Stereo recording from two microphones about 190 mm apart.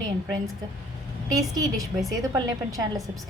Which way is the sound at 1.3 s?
20° right (ahead or behind).